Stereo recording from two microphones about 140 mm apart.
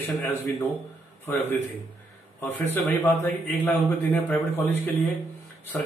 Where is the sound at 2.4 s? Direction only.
15° left (ahead or behind).